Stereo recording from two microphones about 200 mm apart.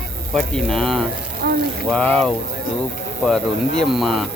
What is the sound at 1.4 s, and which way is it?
Speech, 55° right (ahead or behind).